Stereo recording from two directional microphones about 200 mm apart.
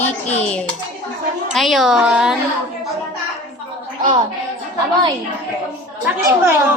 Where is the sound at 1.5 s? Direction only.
Centre (ahead or behind).